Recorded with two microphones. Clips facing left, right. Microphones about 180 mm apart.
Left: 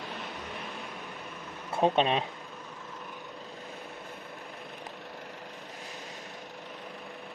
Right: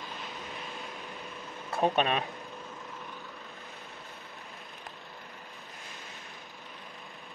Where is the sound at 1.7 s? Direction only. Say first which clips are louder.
Left 2 dB; 25° left (ahead or behind).